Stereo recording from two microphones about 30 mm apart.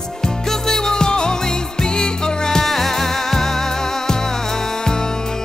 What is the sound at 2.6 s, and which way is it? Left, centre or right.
Music, centre.